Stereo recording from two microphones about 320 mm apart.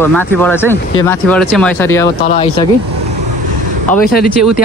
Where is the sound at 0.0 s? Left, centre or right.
Centre.